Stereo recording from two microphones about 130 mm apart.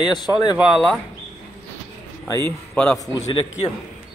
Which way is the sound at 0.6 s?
Centre (ahead or behind).